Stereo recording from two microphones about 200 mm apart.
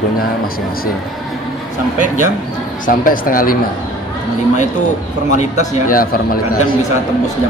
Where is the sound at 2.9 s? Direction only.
45° left (ahead or behind).